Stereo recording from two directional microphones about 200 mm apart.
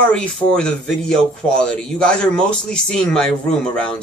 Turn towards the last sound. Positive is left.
turn(degrees=5)  # may be behind; listen again after turning